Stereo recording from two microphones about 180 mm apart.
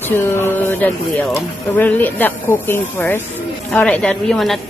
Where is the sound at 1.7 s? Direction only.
10° left (ahead or behind).